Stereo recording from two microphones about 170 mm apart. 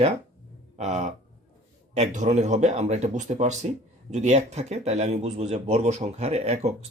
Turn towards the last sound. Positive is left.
turn(degrees=-40)  # may be behind; listen again after turning